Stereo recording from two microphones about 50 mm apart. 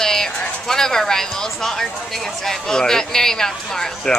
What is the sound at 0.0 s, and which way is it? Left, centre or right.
Speech, centre.